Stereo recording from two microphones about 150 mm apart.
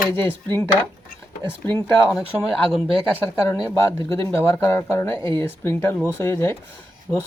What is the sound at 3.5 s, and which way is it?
Speech, 20° left (ahead or behind).